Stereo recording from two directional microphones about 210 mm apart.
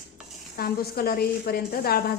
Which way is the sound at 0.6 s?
45° left (ahead or behind).